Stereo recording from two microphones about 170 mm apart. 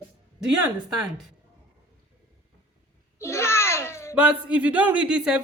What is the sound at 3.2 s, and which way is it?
Babbling, 15° left (ahead or behind).